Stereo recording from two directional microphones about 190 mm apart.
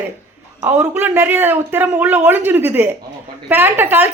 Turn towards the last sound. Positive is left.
turn(degrees=-10)  # may be behind; listen again after turning